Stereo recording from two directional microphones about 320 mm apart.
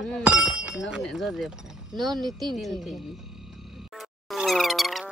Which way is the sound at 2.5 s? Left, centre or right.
Centre.